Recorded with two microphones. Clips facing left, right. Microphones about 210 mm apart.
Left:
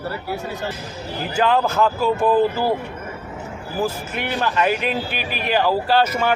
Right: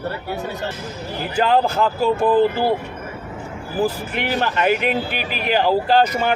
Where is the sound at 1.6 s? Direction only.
30° right (ahead or behind).